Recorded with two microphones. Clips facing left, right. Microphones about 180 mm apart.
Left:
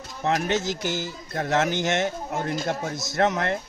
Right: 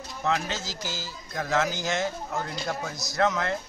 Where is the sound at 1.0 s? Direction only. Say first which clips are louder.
Left 4 dB; 55° left (ahead or behind).